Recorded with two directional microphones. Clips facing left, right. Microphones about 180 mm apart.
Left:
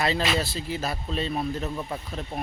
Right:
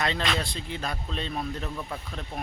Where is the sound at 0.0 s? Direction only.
5° left (ahead or behind).